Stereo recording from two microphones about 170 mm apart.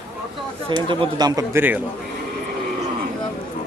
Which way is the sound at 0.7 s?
25° right (ahead or behind).